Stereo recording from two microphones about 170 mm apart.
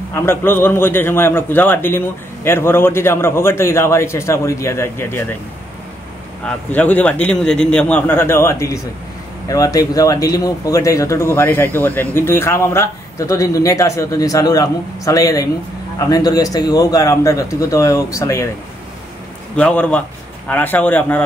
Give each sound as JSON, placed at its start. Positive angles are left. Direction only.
{"t": 0.1, "sound": "a man's voice", "side_deg": 15}
{"t": 6.4, "sound": "a man's voice", "side_deg": 10}
{"t": 19.5, "sound": "a man's voice", "side_deg": 10}